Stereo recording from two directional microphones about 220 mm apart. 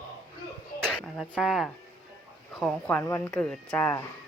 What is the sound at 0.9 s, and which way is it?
Speech, centre (ahead or behind).